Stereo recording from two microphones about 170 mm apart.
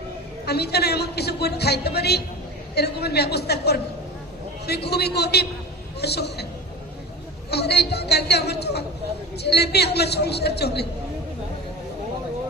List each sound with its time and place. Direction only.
0.4 s speech: 75° left (ahead or behind)
7.5 s speech: 75° left (ahead or behind)